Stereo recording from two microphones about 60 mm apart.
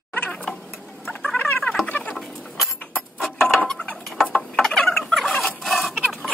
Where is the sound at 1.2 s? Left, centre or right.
Centre.